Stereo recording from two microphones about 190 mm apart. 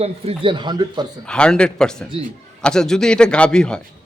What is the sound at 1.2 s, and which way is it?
A man's voice, 5° left (ahead or behind).